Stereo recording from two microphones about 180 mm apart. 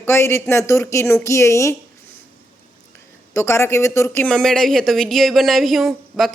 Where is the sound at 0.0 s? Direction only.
15° left (ahead or behind).